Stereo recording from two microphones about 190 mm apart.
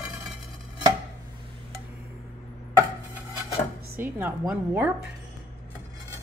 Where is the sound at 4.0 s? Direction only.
10° right (ahead or behind).